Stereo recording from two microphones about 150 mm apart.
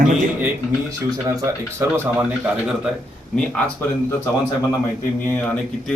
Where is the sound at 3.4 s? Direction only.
5° left (ahead or behind).